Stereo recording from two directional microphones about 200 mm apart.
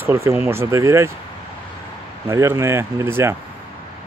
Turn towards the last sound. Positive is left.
turn(degrees=-10)  # may be behind; listen again after turning